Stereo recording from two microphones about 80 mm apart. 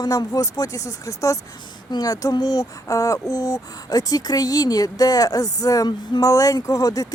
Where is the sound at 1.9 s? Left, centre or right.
Left.